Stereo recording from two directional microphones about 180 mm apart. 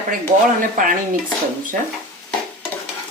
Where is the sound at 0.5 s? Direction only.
50° right (ahead or behind).